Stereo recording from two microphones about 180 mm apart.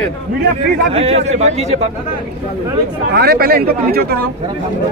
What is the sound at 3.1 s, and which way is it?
Speech, 60° right (ahead or behind).